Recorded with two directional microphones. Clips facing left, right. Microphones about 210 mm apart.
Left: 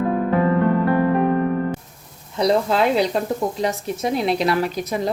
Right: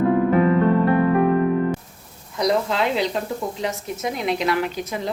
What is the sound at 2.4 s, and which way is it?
Speech, 40° left (ahead or behind).